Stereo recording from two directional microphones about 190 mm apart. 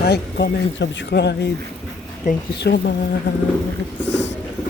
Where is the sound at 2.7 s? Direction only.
60° left (ahead or behind).